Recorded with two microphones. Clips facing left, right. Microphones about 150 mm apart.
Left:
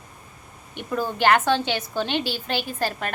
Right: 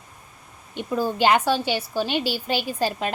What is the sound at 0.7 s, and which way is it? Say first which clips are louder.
A woman's voice: right 2 dB; 10° right (ahead or behind).